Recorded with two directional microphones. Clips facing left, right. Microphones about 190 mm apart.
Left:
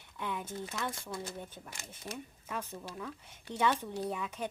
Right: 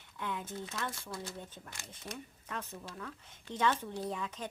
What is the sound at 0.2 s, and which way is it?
Speech, 15° left (ahead or behind).